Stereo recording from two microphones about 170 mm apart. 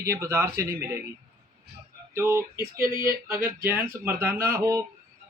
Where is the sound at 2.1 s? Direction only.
15° right (ahead or behind).